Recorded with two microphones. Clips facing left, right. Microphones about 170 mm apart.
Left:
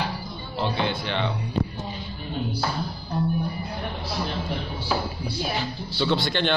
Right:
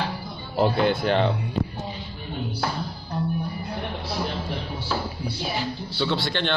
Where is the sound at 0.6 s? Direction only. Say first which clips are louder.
Right 6 dB; 50° right (ahead or behind).